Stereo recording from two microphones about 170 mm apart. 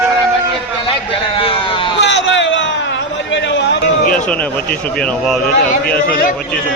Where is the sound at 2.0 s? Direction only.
90° left.